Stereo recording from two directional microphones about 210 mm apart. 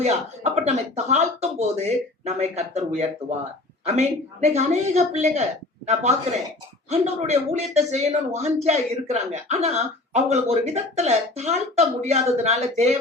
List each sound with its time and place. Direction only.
0.0 s speech: 30° right (ahead or behind)